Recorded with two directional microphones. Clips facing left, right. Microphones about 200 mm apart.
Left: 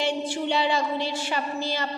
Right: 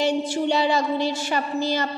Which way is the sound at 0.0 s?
40° right (ahead or behind).